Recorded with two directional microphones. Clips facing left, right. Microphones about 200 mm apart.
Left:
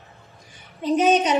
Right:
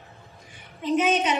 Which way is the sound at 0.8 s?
35° left (ahead or behind).